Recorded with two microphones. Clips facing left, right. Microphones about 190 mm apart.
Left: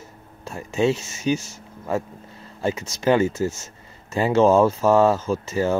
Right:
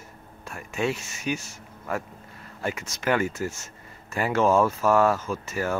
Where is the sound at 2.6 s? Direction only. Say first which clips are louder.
Left 6 dB; 25° left (ahead or behind).